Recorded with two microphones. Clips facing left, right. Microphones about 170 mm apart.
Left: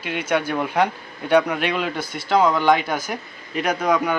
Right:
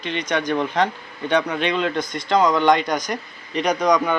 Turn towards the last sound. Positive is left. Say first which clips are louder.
# right 2 dB
turn(degrees=5)  # may be behind; listen again after turning